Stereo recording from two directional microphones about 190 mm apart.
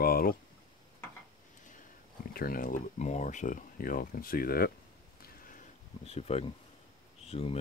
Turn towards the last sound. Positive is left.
turn(degrees=30)  # may be behind; listen again after turning